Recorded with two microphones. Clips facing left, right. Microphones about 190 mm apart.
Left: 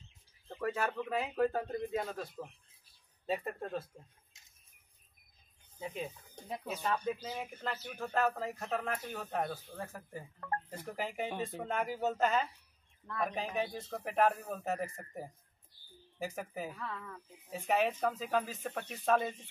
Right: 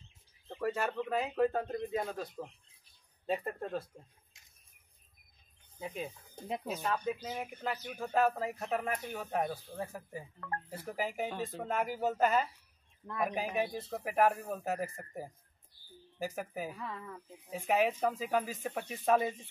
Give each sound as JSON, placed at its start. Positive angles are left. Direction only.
{"t": 0.6, "sound": "speech", "side_deg": 0}
{"t": 2.3, "sound": "a sound", "side_deg": -20}
{"t": 3.3, "sound": "speech", "side_deg": 0}
{"t": 6.7, "sound": "speech", "side_deg": -5}